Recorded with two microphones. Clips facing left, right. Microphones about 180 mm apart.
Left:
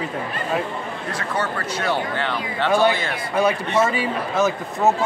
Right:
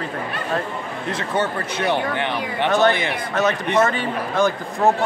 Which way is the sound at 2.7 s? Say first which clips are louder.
Even; 10° left (ahead or behind).